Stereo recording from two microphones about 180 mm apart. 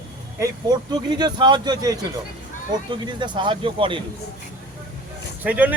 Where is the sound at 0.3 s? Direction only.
20° right (ahead or behind).